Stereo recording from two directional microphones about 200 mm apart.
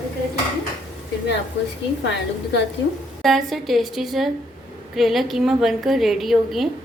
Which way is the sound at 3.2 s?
Centre (ahead or behind).